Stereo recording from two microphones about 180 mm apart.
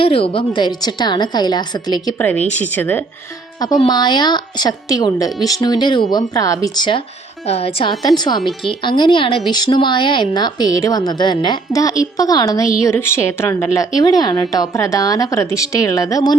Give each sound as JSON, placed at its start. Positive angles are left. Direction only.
{"t": 0.0, "sound": "a woman's voice", "side_deg": 30}
{"t": 2.1, "sound": "a woman's voice", "side_deg": 10}
{"t": 3.8, "sound": "a woman's voice", "side_deg": 25}
{"t": 7.4, "sound": "a woman's voice", "side_deg": 35}